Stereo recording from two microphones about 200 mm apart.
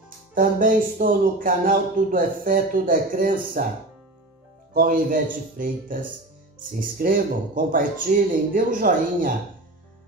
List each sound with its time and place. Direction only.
0.3 s speech: 45° right (ahead or behind)
4.7 s speech: 45° right (ahead or behind)